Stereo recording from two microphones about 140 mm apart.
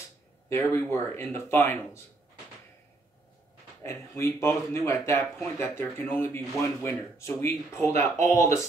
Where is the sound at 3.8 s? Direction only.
20° left (ahead or behind).